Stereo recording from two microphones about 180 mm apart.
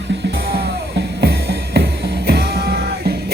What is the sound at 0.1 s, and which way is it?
Music, 70° right (ahead or behind).